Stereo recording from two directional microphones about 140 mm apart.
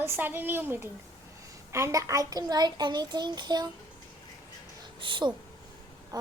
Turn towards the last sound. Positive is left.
turn(degrees=-25)  # may be behind; listen again after turning